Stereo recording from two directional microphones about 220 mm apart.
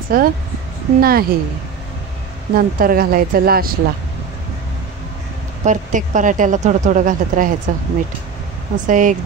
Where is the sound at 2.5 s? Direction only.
40° right (ahead or behind).